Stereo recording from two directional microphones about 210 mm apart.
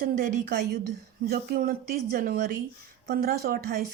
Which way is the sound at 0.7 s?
50° right (ahead or behind).